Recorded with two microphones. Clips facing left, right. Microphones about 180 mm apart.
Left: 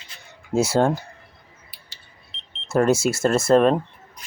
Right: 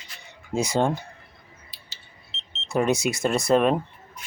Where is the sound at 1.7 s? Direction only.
25° right (ahead or behind).